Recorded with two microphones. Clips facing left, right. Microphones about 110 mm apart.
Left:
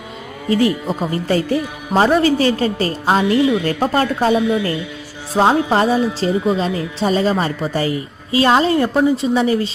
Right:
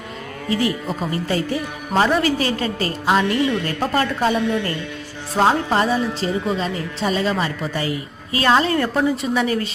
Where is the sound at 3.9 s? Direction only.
35° left (ahead or behind).